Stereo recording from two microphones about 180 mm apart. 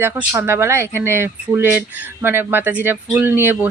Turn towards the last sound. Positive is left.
turn(degrees=-10)  # may be behind; listen again after turning